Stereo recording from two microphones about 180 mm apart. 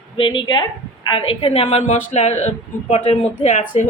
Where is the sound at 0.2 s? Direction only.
25° left (ahead or behind).